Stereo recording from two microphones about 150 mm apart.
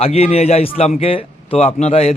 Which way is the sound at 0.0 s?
45° left (ahead or behind).